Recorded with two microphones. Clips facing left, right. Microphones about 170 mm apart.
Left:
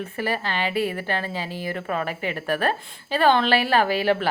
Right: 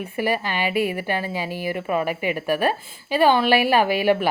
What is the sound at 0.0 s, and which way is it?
Speech, 15° right (ahead or behind).